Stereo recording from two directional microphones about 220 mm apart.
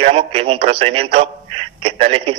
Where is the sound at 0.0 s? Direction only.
25° right (ahead or behind).